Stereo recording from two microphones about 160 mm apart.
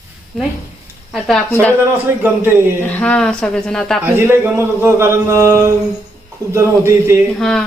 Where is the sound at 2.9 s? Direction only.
5° left (ahead or behind).